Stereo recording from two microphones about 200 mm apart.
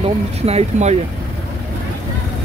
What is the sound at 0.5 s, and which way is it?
Speech, 35° right (ahead or behind).